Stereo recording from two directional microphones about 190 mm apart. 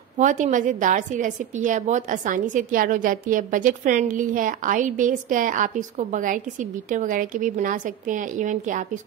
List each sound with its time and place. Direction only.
0.2 s a woman's voice: 40° right (ahead or behind)